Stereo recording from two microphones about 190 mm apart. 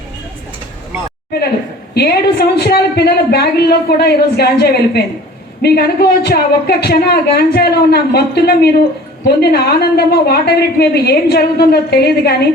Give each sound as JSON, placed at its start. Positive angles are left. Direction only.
{"t": 2.0, "sound": "a woman's voice", "side_deg": 55}